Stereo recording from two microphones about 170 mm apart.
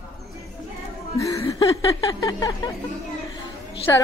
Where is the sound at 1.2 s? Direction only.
20° left (ahead or behind).